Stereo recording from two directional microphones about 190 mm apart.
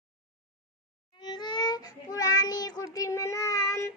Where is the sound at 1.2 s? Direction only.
25° left (ahead or behind).